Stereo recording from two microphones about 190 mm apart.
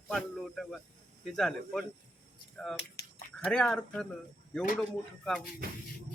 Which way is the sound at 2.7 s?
60° left (ahead or behind).